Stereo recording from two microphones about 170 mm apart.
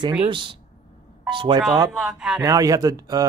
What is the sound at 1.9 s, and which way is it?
Speech, 5° right (ahead or behind).